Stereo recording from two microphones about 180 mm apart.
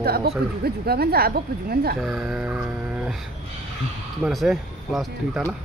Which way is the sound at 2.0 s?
5° right (ahead or behind).